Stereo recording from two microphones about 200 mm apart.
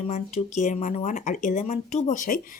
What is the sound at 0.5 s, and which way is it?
Speech, 40° left (ahead or behind).